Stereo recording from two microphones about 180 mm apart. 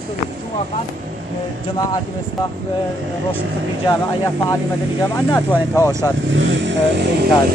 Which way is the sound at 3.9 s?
20° left (ahead or behind).